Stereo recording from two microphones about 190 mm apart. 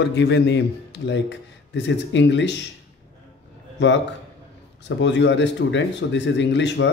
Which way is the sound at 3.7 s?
70° left (ahead or behind).